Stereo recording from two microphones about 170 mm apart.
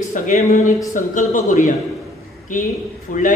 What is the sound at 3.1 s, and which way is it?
Speech, 50° left (ahead or behind).